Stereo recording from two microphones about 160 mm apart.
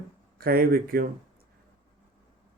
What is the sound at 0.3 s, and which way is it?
Speech, 65° right (ahead or behind).